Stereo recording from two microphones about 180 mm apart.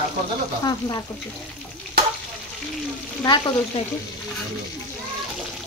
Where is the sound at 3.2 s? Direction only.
25° left (ahead or behind).